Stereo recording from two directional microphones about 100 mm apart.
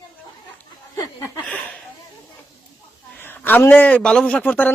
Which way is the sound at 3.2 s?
20° left (ahead or behind).